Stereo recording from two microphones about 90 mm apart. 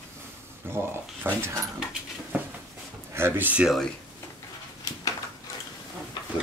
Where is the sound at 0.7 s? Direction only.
25° right (ahead or behind).